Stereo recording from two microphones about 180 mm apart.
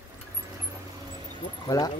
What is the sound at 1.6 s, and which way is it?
Speech, 20° left (ahead or behind).